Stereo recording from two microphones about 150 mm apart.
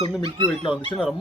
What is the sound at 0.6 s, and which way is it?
Speech, 35° left (ahead or behind).